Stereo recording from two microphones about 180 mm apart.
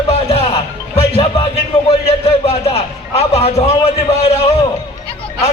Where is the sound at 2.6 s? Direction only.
35° left (ahead or behind).